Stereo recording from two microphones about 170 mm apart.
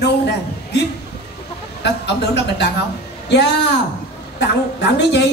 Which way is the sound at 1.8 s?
90° left.